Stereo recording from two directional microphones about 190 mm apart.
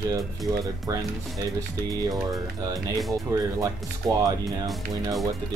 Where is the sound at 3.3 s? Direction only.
20° right (ahead or behind).